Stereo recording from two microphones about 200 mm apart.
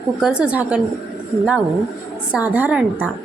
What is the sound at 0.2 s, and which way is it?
Speech, 5° right (ahead or behind).